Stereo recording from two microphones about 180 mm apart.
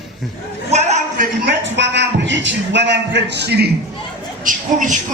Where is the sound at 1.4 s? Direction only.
80° right.